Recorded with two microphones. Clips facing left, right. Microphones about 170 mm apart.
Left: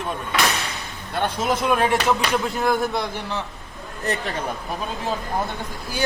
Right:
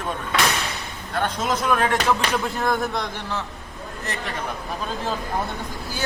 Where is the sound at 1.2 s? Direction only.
10° left (ahead or behind).